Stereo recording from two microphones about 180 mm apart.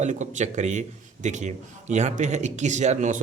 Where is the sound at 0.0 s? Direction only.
40° right (ahead or behind).